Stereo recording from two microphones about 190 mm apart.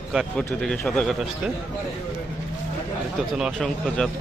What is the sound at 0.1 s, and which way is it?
A man's voice, centre (ahead or behind).